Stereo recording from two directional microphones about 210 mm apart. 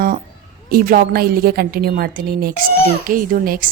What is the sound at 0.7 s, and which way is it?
A woman's voice, 45° right (ahead or behind).